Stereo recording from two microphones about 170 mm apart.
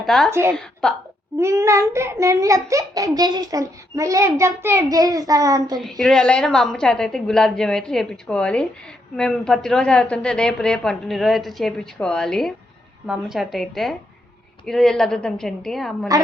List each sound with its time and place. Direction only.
0.0 s a woman's voice: 5° left (ahead or behind)
0.3 s a woman's voice: 15° right (ahead or behind)
0.5 s a woman's voice: 5° left (ahead or behind)
1.4 s a child's voice: 15° right (ahead or behind)
5.8 s a woman's voice: centre (ahead or behind)